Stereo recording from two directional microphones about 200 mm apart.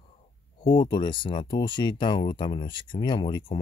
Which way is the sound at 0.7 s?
25° left (ahead or behind).